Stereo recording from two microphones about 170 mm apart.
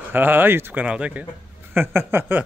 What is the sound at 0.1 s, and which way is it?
Speech, 10° right (ahead or behind).